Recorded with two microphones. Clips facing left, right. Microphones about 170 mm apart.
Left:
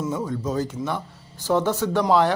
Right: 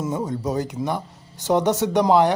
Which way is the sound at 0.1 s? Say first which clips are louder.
Right 1 dB; 15° right (ahead or behind).